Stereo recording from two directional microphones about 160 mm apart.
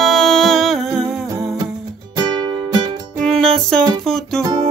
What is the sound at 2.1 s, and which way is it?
Music, 25° right (ahead or behind).